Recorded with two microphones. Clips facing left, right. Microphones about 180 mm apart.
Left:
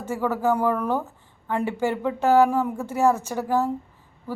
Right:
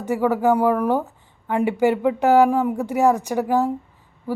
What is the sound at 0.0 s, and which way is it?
Speech, 15° right (ahead or behind).